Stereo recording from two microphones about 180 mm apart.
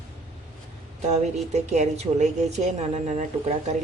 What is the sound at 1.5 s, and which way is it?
A woman's voice, 40° right (ahead or behind).